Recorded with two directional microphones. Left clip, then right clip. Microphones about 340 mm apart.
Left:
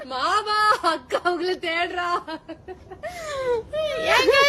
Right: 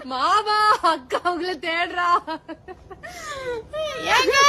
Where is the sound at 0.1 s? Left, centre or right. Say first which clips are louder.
Right 3 dB; centre.